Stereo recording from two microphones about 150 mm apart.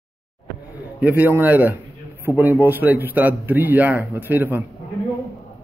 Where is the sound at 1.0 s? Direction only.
10° right (ahead or behind).